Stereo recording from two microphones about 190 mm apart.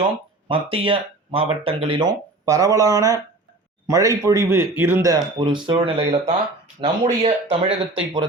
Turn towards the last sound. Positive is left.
turn(degrees=-30)  # may be behind; listen again after turning